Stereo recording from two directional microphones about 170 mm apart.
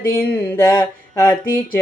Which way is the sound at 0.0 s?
15° left (ahead or behind).